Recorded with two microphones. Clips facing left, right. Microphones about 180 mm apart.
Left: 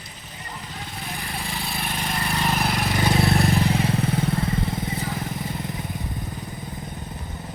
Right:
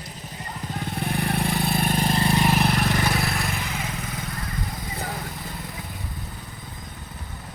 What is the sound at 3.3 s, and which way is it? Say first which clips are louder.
Vehicle: left 9 dB; 35° left (ahead or behind).